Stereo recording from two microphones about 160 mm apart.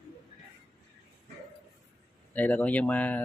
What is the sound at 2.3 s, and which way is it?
Speech, 10° left (ahead or behind).